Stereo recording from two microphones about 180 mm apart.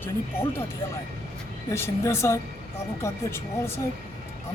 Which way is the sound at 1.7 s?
15° left (ahead or behind).